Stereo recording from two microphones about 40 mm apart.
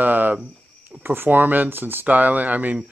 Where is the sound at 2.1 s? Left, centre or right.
Right.